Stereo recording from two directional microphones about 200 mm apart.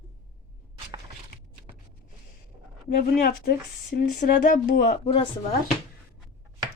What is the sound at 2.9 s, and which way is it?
A woman's voice, 50° left (ahead or behind).